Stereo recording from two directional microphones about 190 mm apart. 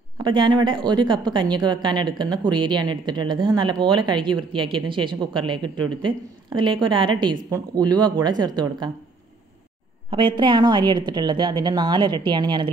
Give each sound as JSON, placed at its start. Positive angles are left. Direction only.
{"t": 0.2, "sound": "a woman's voice", "side_deg": -25}
{"t": 10.0, "sound": "a woman's voice", "side_deg": -25}